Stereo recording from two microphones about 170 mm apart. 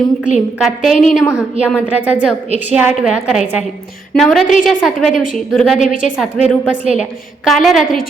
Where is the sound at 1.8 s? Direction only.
10° right (ahead or behind).